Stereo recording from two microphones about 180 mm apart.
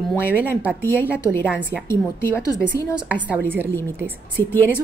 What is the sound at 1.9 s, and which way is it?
Speech, 15° left (ahead or behind).